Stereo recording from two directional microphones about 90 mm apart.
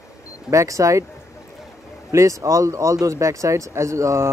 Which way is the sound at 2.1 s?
35° right (ahead or behind).